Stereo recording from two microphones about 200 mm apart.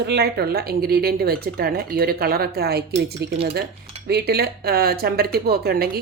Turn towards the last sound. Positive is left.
turn(degrees=-50)  # may be behind; listen again after turning